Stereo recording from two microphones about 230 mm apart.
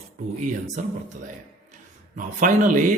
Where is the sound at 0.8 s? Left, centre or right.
Right.